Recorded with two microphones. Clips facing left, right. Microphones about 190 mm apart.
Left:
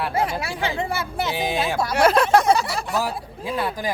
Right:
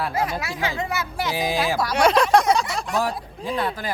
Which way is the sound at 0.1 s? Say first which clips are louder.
Left 2 dB; 30° left (ahead or behind).